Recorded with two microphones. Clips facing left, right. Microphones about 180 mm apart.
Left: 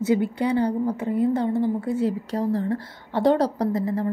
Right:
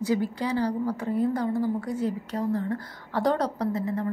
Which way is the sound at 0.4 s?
25° left (ahead or behind).